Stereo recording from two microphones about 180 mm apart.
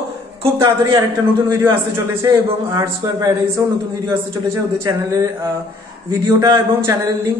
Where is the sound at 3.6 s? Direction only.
20° right (ahead or behind).